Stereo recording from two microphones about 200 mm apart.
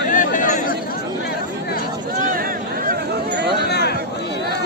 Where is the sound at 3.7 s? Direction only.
55° left (ahead or behind).